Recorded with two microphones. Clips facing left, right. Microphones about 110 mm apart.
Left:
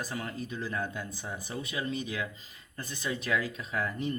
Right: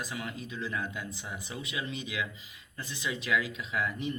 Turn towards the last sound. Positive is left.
turn(degrees=40)  # may be behind; listen again after turning